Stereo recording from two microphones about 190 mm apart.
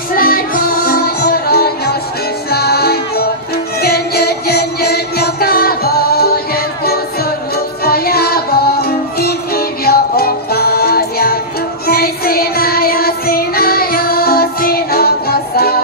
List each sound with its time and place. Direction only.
0.1 s music: 50° left (ahead or behind)